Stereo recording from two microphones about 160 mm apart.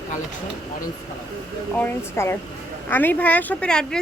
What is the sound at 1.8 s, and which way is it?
Speech, 15° left (ahead or behind).